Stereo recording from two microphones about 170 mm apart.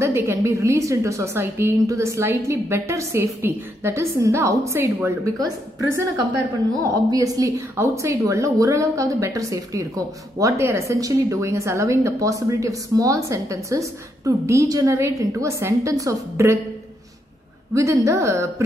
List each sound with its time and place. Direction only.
0.0 s a woman's voice: 15° right (ahead or behind)
17.7 s a woman's voice: 15° right (ahead or behind)